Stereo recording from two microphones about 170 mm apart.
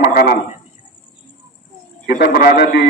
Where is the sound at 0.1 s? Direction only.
60° left (ahead or behind).